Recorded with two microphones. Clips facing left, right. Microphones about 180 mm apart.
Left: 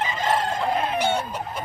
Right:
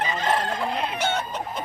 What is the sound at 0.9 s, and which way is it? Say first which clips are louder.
Chicken: left 3 dB; 10° left (ahead or behind).